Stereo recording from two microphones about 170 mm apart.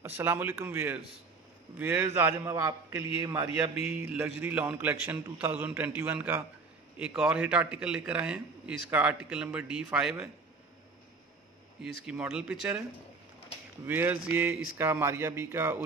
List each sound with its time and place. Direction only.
0.0 s a man's voice: 10° right (ahead or behind)
11.8 s a man's voice: 5° right (ahead or behind)
13.8 s a man's voice: 10° right (ahead or behind)